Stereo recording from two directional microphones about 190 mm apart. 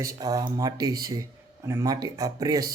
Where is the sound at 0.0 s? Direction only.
20° right (ahead or behind).